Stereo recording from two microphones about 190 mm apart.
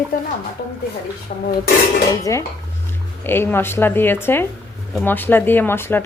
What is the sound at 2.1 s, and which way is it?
A woman's voice, 15° left (ahead or behind).